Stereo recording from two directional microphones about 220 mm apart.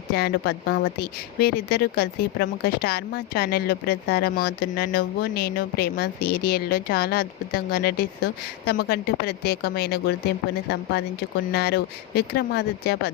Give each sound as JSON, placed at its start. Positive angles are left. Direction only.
{"t": 0.1, "sound": "speech", "side_deg": 45}